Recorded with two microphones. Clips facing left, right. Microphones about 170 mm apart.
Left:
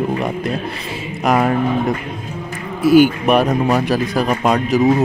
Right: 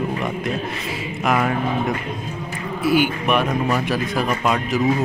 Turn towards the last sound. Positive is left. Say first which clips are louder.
# left 5 dB
turn(degrees=40)  # may be behind; listen again after turning